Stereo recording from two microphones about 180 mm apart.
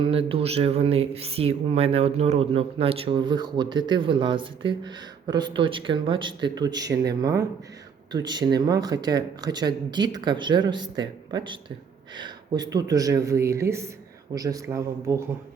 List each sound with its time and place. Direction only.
0.0 s speech: 30° right (ahead or behind)